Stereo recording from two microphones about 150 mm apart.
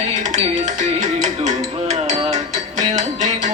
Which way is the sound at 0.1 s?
55° right (ahead or behind).